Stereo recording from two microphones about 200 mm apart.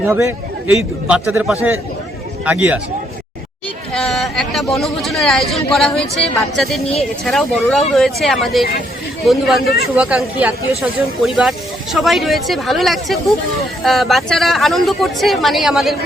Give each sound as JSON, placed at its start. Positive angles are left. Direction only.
{"t": 0.1, "sound": "a man's voice", "side_deg": -15}
{"t": 3.9, "sound": "speech", "side_deg": 0}
{"t": 9.6, "sound": "speech", "side_deg": 50}
{"t": 10.0, "sound": "speech", "side_deg": -5}